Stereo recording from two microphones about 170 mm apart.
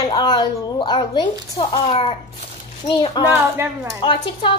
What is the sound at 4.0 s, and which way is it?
Speech, 30° left (ahead or behind).